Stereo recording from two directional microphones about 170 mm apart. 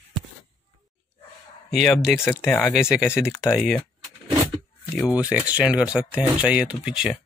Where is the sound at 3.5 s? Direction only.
5° right (ahead or behind).